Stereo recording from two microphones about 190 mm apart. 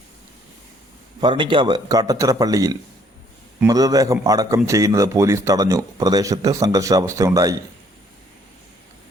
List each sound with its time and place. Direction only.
1.2 s a man's voice: 25° right (ahead or behind)